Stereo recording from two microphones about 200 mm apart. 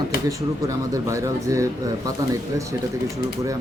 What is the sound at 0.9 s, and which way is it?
Speech, 15° right (ahead or behind).